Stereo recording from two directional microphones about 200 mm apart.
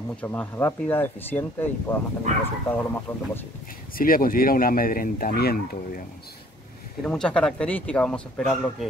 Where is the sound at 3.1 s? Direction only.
10° left (ahead or behind).